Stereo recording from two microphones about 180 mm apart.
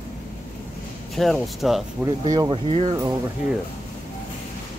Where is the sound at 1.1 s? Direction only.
Centre (ahead or behind).